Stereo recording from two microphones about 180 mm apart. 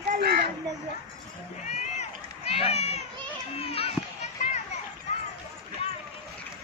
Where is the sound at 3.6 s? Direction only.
35° left (ahead or behind).